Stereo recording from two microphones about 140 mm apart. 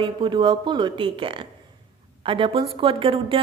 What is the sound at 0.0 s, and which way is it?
A woman's voice, 35° right (ahead or behind).